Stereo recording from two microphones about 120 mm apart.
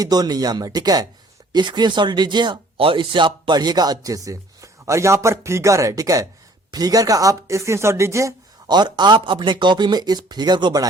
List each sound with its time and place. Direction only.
0.0 s speech: 35° right (ahead or behind)